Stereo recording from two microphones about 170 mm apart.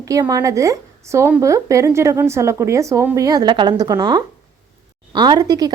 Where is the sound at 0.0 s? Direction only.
20° right (ahead or behind).